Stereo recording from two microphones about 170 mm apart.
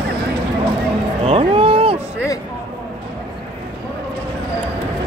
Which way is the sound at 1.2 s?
35° right (ahead or behind).